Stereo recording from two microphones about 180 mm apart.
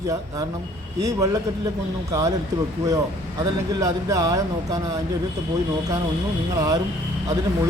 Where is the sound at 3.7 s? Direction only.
20° right (ahead or behind).